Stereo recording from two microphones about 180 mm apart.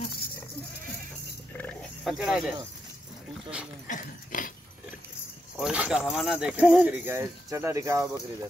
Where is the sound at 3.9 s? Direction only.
45° left (ahead or behind).